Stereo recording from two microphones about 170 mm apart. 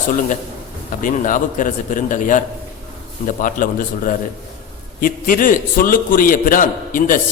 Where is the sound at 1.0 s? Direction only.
50° left (ahead or behind).